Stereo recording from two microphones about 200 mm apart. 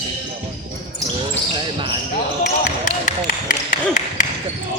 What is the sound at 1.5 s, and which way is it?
Basketball bounce, 25° right (ahead or behind).